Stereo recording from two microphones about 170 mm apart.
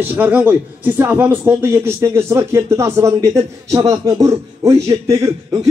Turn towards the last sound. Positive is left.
turn(degrees=-20)  # may be behind; listen again after turning